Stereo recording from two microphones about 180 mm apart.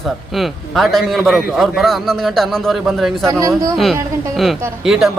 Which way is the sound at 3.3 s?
15° right (ahead or behind).